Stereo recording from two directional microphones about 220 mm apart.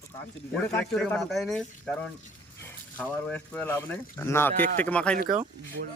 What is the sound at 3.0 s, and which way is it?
Speech, 5° left (ahead or behind).